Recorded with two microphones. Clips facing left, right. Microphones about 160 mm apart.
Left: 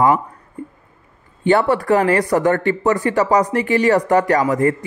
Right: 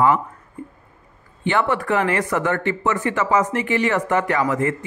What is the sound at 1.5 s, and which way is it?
Speech, 35° left (ahead or behind).